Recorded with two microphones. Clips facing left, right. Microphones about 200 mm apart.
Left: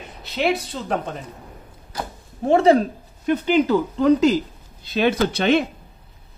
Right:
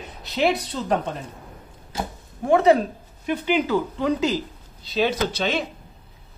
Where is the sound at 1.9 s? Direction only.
25° right (ahead or behind).